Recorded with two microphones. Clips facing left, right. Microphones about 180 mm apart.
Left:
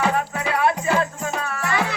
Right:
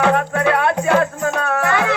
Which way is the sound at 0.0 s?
65° right (ahead or behind).